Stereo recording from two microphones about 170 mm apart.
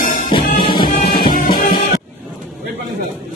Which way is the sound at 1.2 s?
60° left (ahead or behind).